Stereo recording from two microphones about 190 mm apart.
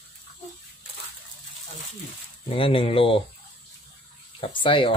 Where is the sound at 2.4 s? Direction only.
30° left (ahead or behind).